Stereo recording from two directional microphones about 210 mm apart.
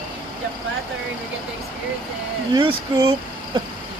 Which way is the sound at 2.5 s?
20° right (ahead or behind).